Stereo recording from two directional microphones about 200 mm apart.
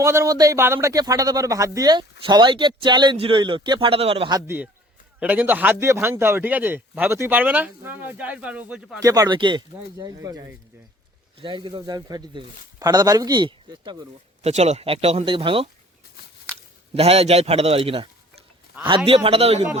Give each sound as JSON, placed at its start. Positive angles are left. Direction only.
{"t": 0.0, "sound": "speech", "side_deg": -15}
{"t": 9.0, "sound": "speech", "side_deg": -15}
{"t": 14.4, "sound": "speech", "side_deg": -35}
{"t": 16.9, "sound": "a man's voice", "side_deg": -30}